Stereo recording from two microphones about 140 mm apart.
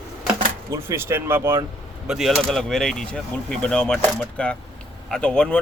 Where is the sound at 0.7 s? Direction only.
20° right (ahead or behind).